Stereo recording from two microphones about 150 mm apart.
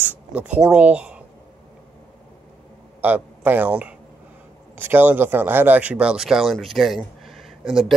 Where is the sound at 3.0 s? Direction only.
10° right (ahead or behind).